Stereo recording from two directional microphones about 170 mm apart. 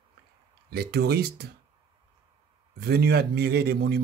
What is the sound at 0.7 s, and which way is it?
Speech, 65° right (ahead or behind).